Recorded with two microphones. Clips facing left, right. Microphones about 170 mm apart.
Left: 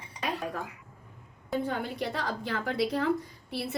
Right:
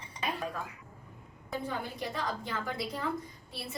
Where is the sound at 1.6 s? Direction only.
70° left (ahead or behind).